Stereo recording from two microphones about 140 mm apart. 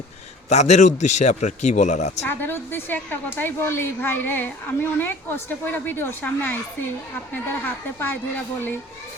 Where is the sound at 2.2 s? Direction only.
15° left (ahead or behind).